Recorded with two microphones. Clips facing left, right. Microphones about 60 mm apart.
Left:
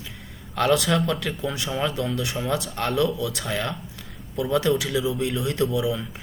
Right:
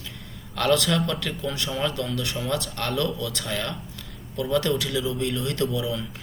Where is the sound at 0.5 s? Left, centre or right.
Centre.